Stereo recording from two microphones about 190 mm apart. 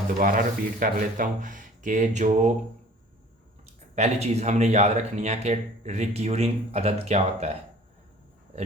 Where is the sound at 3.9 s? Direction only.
35° right (ahead or behind).